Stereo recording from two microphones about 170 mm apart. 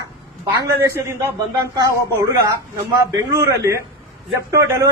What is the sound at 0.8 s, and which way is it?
A man's voice, 15° right (ahead or behind).